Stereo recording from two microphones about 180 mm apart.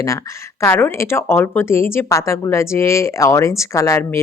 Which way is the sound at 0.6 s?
15° left (ahead or behind).